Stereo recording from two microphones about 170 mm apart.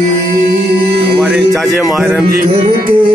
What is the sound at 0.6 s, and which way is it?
Music, 70° right (ahead or behind).